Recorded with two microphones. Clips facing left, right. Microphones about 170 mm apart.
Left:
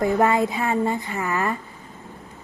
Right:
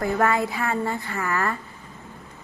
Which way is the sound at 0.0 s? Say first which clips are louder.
Left 3 dB; 20° left (ahead or behind).